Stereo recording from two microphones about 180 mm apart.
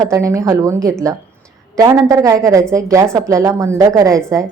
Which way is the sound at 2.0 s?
20° right (ahead or behind).